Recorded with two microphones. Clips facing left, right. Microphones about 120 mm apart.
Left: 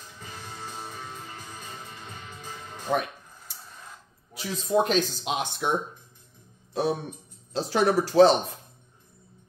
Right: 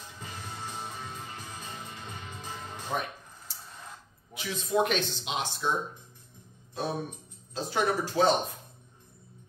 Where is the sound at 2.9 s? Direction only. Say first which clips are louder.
Left 6 dB; 75° left (ahead or behind).